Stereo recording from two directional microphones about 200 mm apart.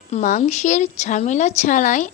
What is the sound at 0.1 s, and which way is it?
A woman's voice, 40° left (ahead or behind).